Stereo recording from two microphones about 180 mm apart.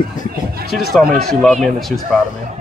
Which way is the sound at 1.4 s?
Centre (ahead or behind).